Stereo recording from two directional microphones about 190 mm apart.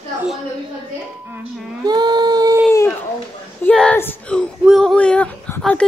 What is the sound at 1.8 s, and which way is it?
Speech, 20° right (ahead or behind).